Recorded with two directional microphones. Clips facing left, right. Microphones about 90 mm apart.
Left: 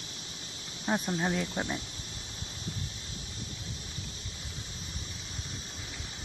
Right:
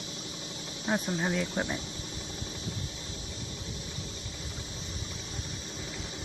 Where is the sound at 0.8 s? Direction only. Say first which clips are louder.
Even; centre (ahead or behind).